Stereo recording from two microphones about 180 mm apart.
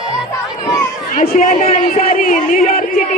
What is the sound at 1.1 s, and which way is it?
Speech, 45° left (ahead or behind).